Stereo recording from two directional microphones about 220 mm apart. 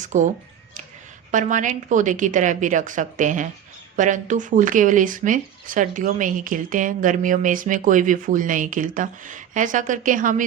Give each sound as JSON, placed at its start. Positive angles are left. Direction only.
{"t": 0.0, "sound": "speech", "side_deg": -35}
{"t": 1.3, "sound": "speech", "side_deg": -35}